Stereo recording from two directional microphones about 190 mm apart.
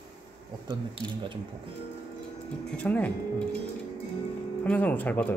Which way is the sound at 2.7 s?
10° left (ahead or behind).